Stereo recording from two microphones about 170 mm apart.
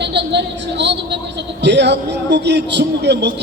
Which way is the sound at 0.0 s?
90° right.